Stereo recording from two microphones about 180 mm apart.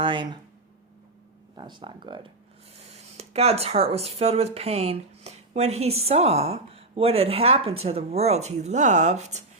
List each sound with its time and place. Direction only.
0.0 s speech: 25° right (ahead or behind)
1.5 s speech: 25° right (ahead or behind)
2.9 s speech: 35° right (ahead or behind)